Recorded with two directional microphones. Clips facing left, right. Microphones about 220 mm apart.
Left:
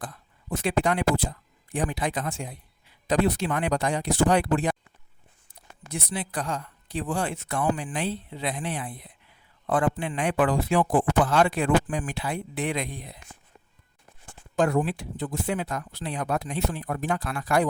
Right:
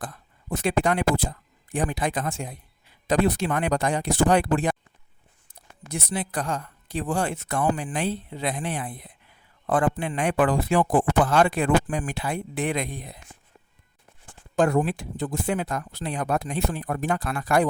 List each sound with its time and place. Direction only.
0.5 s a man's voice: 45° right (ahead or behind)
5.9 s a man's voice: 45° right (ahead or behind)
14.5 s a man's voice: 50° right (ahead or behind)